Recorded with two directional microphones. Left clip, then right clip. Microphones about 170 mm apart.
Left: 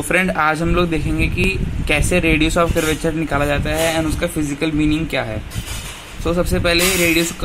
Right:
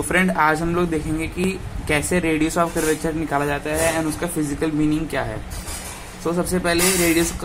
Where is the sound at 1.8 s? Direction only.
45° left (ahead or behind).